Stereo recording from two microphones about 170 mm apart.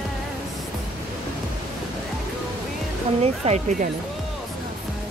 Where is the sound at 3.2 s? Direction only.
40° right (ahead or behind).